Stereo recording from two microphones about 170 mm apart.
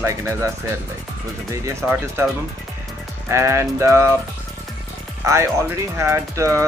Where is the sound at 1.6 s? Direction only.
15° right (ahead or behind).